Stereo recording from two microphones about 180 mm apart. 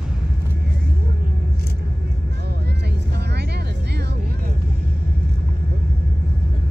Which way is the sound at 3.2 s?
65° right (ahead or behind).